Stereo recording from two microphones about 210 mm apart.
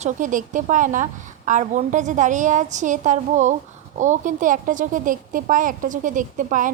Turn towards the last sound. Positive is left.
turn(degrees=-40)  # may be behind; listen again after turning